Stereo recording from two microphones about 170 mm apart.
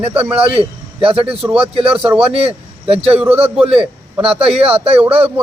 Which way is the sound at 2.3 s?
35° right (ahead or behind).